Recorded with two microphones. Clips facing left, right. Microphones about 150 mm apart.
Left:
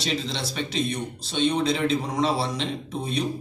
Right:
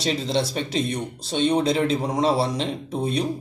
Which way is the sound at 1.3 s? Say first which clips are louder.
Right 3 dB; 40° right (ahead or behind).